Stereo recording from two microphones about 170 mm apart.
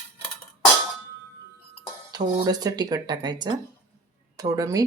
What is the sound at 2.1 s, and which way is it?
Speech, 25° right (ahead or behind).